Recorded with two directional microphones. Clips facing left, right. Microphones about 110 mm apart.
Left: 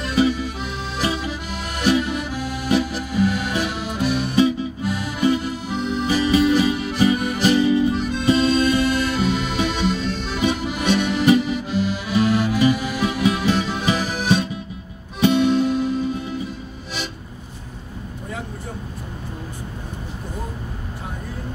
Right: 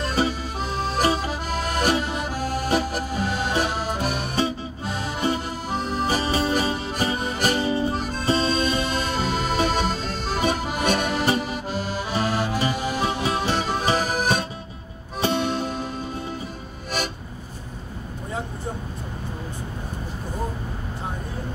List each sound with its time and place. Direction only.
0.0 s accordion: 35° right (ahead or behind)
7.3 s music: 40° right (ahead or behind)
16.9 s music: 50° right (ahead or behind)